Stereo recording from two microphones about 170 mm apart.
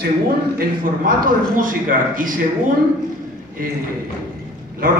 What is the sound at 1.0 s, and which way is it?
A man's voice, 55° right (ahead or behind).